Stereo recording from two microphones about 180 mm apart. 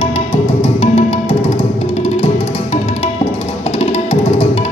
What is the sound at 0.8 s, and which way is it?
Music, 30° left (ahead or behind).